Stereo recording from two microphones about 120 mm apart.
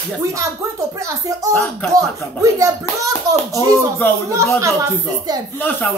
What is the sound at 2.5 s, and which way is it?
Speech, 30° right (ahead or behind).